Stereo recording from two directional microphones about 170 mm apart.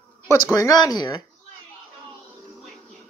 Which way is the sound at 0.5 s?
20° left (ahead or behind).